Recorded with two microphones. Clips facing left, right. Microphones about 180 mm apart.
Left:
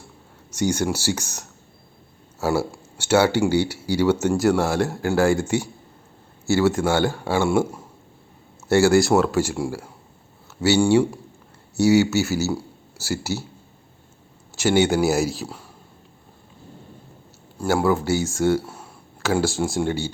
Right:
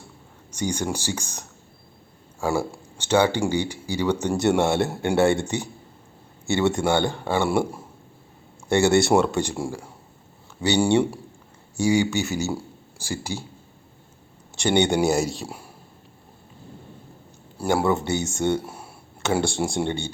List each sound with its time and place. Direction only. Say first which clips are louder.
0.5 s speech: left 4 dB; 10° left (ahead or behind)
8.7 s speech: left 2 dB; centre (ahead or behind)
11.8 s speech: left 4 dB; 5° left (ahead or behind)
14.5 s speech: left 2 dB; 5° left (ahead or behind)
17.7 s speech: left 3 dB; centre (ahead or behind)
18.6 s a sound: right 1 dB; 10° right (ahead or behind)
19.2 s speech: left 2 dB; centre (ahead or behind)